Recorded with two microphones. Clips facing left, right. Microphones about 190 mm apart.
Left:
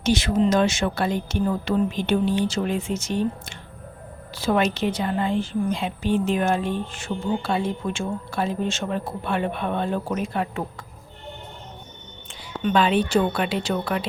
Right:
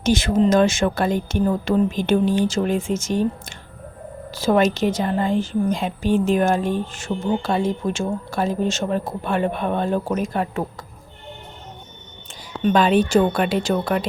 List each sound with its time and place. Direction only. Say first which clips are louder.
0.0 s a woman's voice: right 3 dB; 50° right (ahead or behind)
12.6 s a woman's voice: right 4 dB; 45° right (ahead or behind)